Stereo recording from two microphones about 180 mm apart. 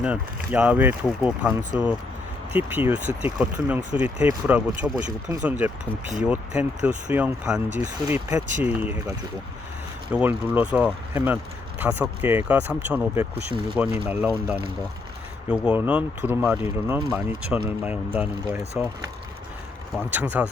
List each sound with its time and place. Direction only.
0.0 s speech: 5° right (ahead or behind)
1.7 s speech: 25° left (ahead or behind)
2.5 s speech: 10° right (ahead or behind)
20.1 s speech: 10° right (ahead or behind)